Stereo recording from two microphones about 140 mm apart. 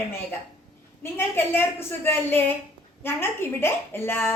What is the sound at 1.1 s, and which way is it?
Speech, 15° left (ahead or behind).